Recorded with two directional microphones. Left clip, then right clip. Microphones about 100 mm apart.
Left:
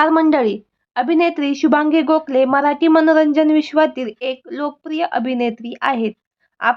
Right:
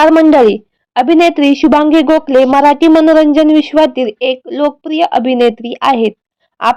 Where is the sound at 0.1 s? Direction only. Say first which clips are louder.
Right 8 dB; 60° right (ahead or behind).